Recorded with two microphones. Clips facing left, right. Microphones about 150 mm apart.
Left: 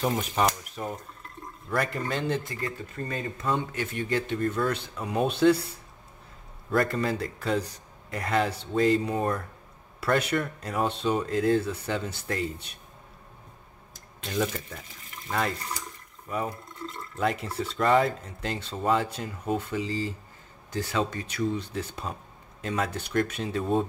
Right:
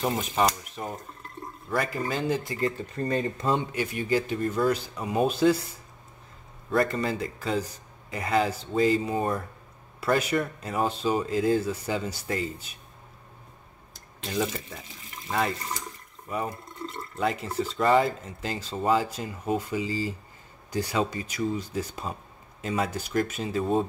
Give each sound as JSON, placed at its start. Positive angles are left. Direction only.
{"t": 0.0, "sound": "speech", "side_deg": 0}
{"t": 2.4, "sound": "speech", "side_deg": -20}
{"t": 3.0, "sound": "speech", "side_deg": -35}
{"t": 3.7, "sound": "speech", "side_deg": -10}
{"t": 6.7, "sound": "speech", "side_deg": 0}
{"t": 14.2, "sound": "speech", "side_deg": -5}